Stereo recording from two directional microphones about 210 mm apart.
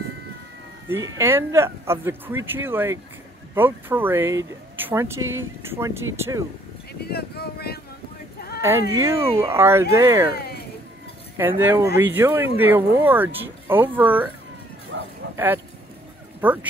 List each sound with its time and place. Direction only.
1.0 s speech: 15° right (ahead or behind)
6.9 s speech: 50° left (ahead or behind)
8.5 s speech: 15° right (ahead or behind)
11.3 s speech: 10° right (ahead or behind)
14.9 s bow-wow: 65° right (ahead or behind)
15.3 s speech: 10° right (ahead or behind)